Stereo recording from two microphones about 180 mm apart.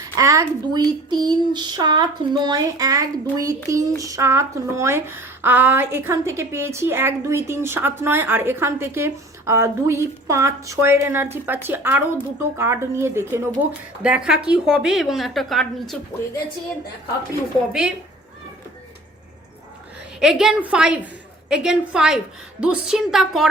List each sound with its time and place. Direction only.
0.2 s child singing: 20° right (ahead or behind)
4.0 s a woman's voice: 15° right (ahead or behind); by 16.0 s centre (ahead or behind)
17.7 s a woman's voice: 5° right (ahead or behind)
20.1 s a woman's voice: 5° right (ahead or behind)